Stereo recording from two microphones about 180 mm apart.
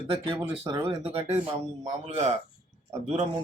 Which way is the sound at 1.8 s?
40° right (ahead or behind).